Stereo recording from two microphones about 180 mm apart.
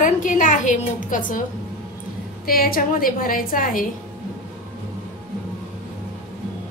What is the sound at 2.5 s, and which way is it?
A woman's voice, 55° left (ahead or behind).